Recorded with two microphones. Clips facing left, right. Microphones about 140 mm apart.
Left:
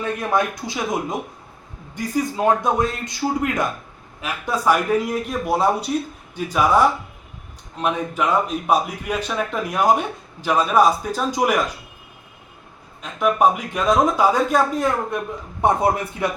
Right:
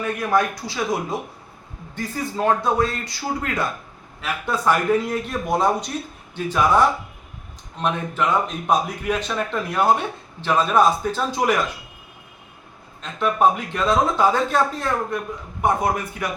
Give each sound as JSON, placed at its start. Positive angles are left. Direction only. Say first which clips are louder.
{"t": 0.0, "sound": "speech", "louder": "even", "side_deg": 20}
{"t": 2.0, "sound": "a man's voice", "louder": "left 3 dB", "side_deg": 15}
{"t": 13.0, "sound": "a man's voice", "louder": "left 1 dB", "side_deg": 10}
{"t": 15.6, "sound": "speech", "louder": "left 2 dB", "side_deg": 25}